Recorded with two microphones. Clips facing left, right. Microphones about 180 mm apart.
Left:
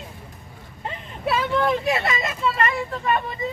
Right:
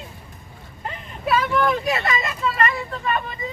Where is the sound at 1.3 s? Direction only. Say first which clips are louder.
Right 1 dB; 25° left (ahead or behind).